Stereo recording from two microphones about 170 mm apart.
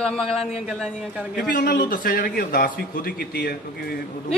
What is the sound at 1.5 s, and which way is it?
A man's voice, 60° left (ahead or behind).